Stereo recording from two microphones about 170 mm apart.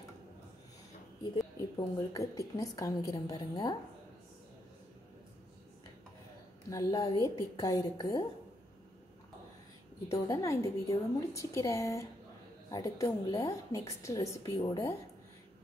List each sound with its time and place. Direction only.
1.8 s a woman's voice: 20° left (ahead or behind)
6.7 s a woman's voice: 20° left (ahead or behind)
10.2 s a woman's voice: 20° left (ahead or behind)